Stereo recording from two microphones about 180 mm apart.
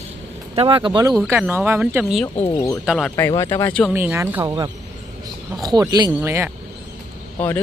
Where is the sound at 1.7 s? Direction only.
10° right (ahead or behind).